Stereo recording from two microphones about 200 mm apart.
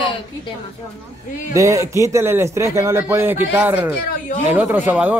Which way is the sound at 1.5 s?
15° right (ahead or behind).